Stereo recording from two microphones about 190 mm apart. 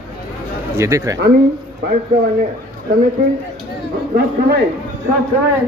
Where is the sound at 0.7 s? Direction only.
15° right (ahead or behind).